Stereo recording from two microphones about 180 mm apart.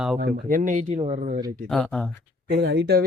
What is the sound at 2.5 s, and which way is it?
Speech, 65° right (ahead or behind).